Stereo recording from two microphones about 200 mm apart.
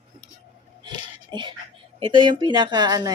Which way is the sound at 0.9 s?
25° right (ahead or behind).